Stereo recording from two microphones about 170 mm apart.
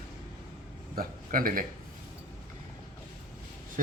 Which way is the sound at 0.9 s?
55° right (ahead or behind).